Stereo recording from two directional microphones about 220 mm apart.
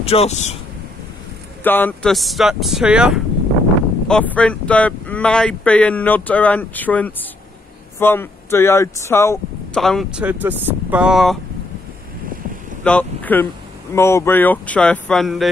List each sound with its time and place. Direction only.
0.0 s a man's voice: 25° left (ahead or behind)
1.6 s speech: 10° left (ahead or behind)
9.8 s speech: centre (ahead or behind)
12.8 s speech: 5° left (ahead or behind)